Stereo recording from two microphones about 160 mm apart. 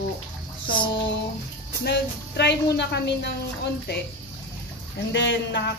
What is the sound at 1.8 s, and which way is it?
A woman's voice, 90° left.